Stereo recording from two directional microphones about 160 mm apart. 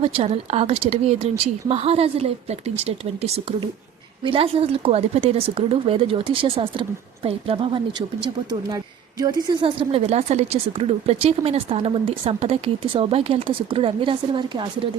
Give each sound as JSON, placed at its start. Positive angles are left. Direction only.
{"t": 0.0, "sound": "a woman's voice", "side_deg": -40}
{"t": 9.2, "sound": "a woman's voice", "side_deg": -25}